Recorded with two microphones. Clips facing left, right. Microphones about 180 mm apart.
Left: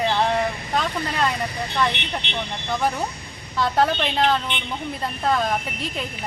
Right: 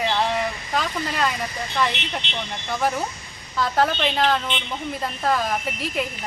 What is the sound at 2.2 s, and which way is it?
Speech, 60° left (ahead or behind).